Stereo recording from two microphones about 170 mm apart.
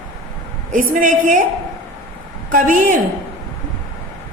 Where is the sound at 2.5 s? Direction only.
50° right (ahead or behind).